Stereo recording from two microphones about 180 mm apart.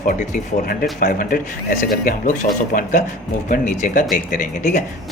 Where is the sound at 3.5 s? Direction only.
45° left (ahead or behind).